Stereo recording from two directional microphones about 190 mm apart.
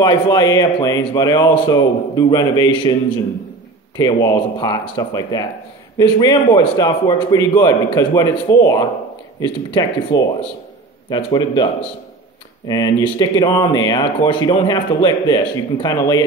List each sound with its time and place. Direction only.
0.0 s speech: 20° left (ahead or behind)